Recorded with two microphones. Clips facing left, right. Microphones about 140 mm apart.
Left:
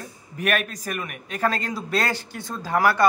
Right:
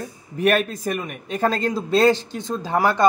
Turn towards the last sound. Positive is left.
turn(degrees=-20)  # may be behind; listen again after turning